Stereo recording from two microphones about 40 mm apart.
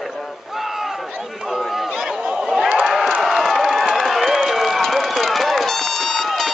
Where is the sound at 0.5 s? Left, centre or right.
Centre.